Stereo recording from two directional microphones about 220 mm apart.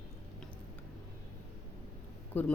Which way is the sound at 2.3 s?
10° left (ahead or behind).